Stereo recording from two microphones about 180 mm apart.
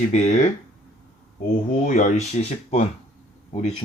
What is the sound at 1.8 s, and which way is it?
Speech, 40° left (ahead or behind).